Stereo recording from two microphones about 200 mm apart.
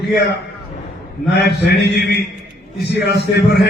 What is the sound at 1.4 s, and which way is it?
A man's voice, 55° left (ahead or behind).